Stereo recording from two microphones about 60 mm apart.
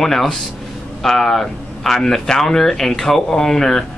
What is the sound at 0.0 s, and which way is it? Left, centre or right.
Speech, centre.